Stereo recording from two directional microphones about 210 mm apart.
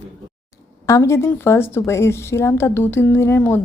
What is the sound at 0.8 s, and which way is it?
A woman's voice, 15° left (ahead or behind).